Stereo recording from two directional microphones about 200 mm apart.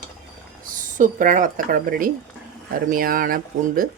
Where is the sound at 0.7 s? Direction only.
40° right (ahead or behind).